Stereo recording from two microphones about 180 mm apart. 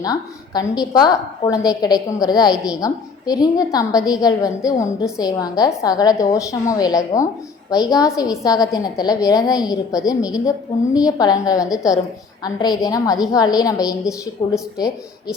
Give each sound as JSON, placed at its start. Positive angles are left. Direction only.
{"t": 0.0, "sound": "a woman's voice", "side_deg": 20}